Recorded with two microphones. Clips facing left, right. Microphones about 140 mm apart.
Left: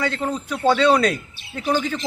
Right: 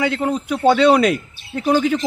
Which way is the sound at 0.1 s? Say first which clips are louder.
Right 5 dB; 15° right (ahead or behind).